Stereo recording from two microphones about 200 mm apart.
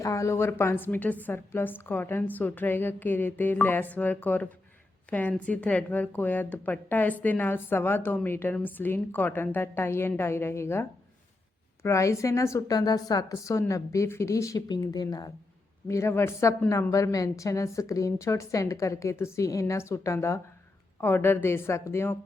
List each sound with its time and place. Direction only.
0.0 s a woman's voice: 15° left (ahead or behind)